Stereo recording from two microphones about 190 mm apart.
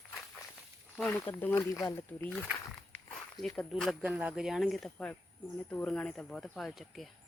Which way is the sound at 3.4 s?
Centre (ahead or behind).